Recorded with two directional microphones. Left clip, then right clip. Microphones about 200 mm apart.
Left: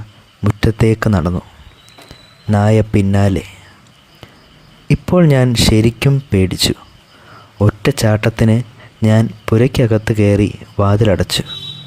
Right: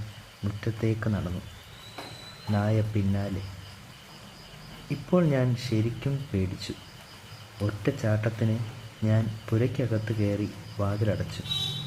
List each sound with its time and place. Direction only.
0.4 s speech: 60° left (ahead or behind)
2.5 s speech: 55° left (ahead or behind)
4.9 s speech: 60° left (ahead or behind)
7.7 s speech: 60° left (ahead or behind)